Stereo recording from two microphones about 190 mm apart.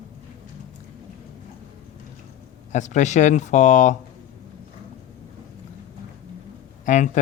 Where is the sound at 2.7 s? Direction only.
40° left (ahead or behind).